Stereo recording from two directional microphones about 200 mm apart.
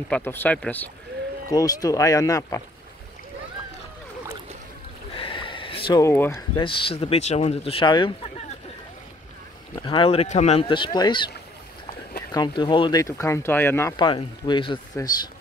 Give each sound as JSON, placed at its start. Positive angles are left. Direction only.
{"t": 0.1, "sound": "speech", "side_deg": 10}
{"t": 1.5, "sound": "speech", "side_deg": 20}
{"t": 5.1, "sound": "a sound", "side_deg": 25}
{"t": 6.5, "sound": "speech", "side_deg": 25}
{"t": 9.8, "sound": "speech", "side_deg": 25}
{"t": 13.9, "sound": "speech", "side_deg": 25}